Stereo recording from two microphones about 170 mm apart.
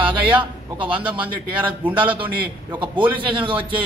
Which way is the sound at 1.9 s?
30° right (ahead or behind).